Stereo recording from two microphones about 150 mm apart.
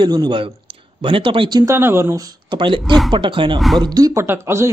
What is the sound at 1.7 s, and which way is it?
Speech, 15° right (ahead or behind).